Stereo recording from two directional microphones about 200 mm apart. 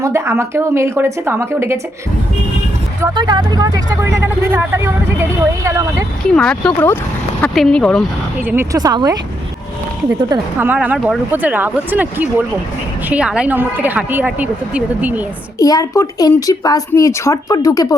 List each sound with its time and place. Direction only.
0.0 s speech: 15° right (ahead or behind)
3.0 s speech: 20° right (ahead or behind)
6.3 s speech: 5° left (ahead or behind)
8.4 s speech: 15° right (ahead or behind)
10.2 s speech: 20° right (ahead or behind)
15.5 s speech: 15° left (ahead or behind)